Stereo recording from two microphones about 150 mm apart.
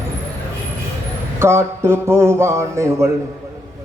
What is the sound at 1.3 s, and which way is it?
A man's voice, 15° right (ahead or behind).